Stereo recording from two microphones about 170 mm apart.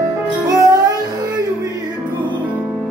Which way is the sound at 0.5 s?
20° right (ahead or behind).